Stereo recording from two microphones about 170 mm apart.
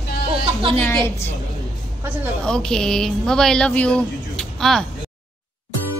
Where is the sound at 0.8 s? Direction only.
15° left (ahead or behind).